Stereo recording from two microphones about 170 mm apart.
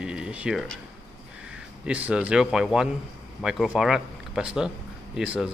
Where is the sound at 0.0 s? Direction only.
5° right (ahead or behind).